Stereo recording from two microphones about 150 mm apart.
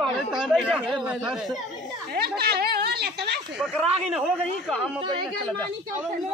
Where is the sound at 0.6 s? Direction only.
5° right (ahead or behind).